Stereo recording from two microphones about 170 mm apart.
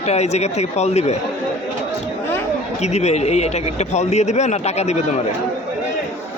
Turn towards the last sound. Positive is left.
turn(degrees=40)  # may be behind; listen again after turning